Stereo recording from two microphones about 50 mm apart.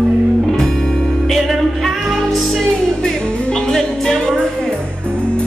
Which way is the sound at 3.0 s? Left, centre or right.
Centre.